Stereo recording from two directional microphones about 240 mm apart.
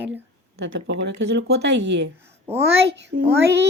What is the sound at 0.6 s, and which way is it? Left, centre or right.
A woman's voice, right.